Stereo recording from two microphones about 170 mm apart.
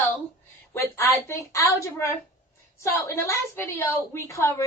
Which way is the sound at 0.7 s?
15° left (ahead or behind).